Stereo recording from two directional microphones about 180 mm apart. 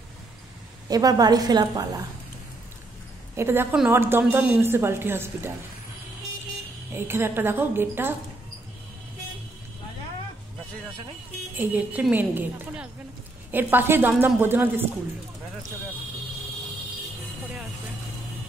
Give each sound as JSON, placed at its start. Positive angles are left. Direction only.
{"t": 0.8, "sound": "a woman's voice", "side_deg": -20}
{"t": 3.3, "sound": "a woman's voice", "side_deg": -15}
{"t": 6.9, "sound": "a woman's voice", "side_deg": -15}
{"t": 11.5, "sound": "a woman's voice", "side_deg": -10}